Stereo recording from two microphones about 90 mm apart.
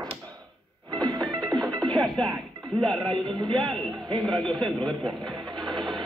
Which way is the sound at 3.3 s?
60° right (ahead or behind).